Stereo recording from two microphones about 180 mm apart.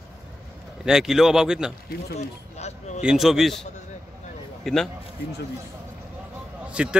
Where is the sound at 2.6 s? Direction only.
40° left (ahead or behind).